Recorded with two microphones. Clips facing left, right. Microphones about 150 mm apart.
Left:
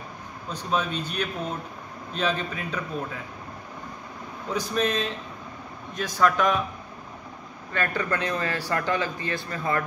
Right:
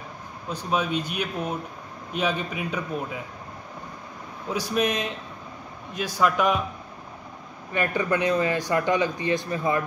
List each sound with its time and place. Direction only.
0.5 s speech: 10° right (ahead or behind)
4.5 s speech: 10° right (ahead or behind)
7.7 s speech: 15° right (ahead or behind)